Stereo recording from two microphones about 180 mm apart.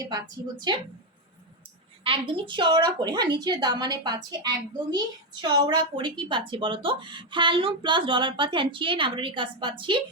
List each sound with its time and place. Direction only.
0.0 s a woman's voice: 20° right (ahead or behind)
2.0 s a woman's voice: 30° right (ahead or behind)